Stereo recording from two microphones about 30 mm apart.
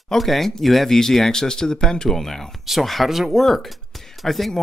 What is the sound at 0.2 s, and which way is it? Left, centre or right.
Speech, centre.